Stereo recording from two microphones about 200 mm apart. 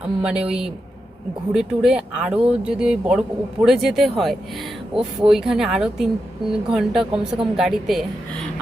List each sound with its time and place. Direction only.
0.0 s speech: 5° right (ahead or behind)